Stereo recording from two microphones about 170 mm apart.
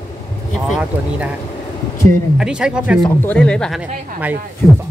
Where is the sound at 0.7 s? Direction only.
5° right (ahead or behind).